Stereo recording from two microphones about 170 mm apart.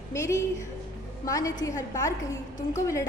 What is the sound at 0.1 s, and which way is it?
A woman's voice, 15° left (ahead or behind).